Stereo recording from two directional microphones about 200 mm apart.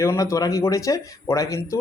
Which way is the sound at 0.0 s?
15° left (ahead or behind).